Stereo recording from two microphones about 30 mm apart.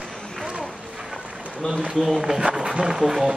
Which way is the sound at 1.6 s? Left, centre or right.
Left.